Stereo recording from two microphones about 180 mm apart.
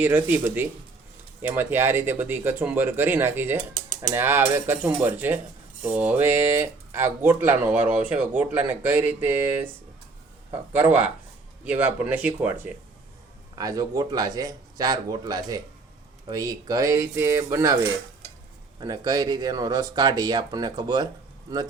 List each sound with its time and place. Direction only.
0.0 s speech: 10° right (ahead or behind)
13.6 s speech: 20° right (ahead or behind)
18.8 s speech: 20° right (ahead or behind)